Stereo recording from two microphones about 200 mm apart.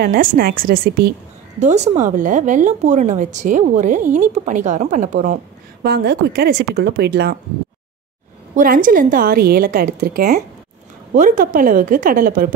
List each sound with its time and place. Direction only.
0.0 s a woman's voice: 50° right (ahead or behind)
1.6 s a woman's voice: 35° right (ahead or behind)
5.9 s a woman's voice: 55° right (ahead or behind)
8.5 s a woman's voice: 40° right (ahead or behind)